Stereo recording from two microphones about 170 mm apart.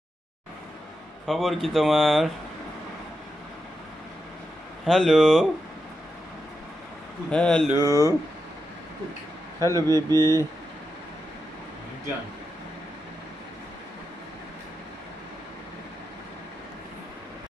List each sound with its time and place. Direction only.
1.2 s speech: centre (ahead or behind)
4.8 s speech: centre (ahead or behind)
7.2 s speech: 5° left (ahead or behind)
7.7 s speech: 20° right (ahead or behind)
9.8 s speech: 20° right (ahead or behind)